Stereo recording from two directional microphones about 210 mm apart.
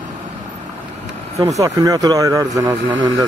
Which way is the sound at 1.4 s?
15° right (ahead or behind).